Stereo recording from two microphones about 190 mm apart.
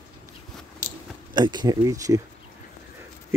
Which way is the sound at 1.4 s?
20° right (ahead or behind).